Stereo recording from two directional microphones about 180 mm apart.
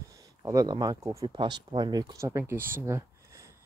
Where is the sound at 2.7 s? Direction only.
15° right (ahead or behind).